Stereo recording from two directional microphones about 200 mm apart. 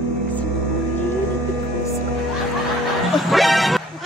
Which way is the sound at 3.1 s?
Centre (ahead or behind).